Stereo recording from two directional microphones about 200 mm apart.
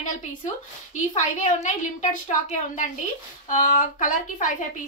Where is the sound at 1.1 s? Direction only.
40° left (ahead or behind).